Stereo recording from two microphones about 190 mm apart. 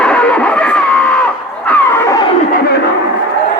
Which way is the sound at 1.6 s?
10° left (ahead or behind).